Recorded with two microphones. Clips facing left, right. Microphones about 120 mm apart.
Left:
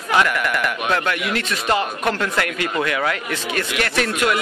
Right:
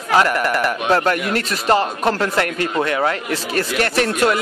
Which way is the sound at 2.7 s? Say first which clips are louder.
Right 2 dB; 25° right (ahead or behind).